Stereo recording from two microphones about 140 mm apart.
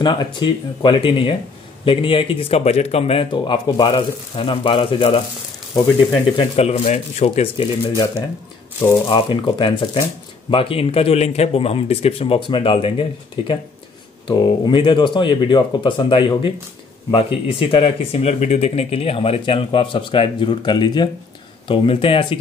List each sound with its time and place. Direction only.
0.0 s speech: 35° left (ahead or behind)
6.3 s speech: 45° left (ahead or behind)
9.1 s speech: 35° left (ahead or behind)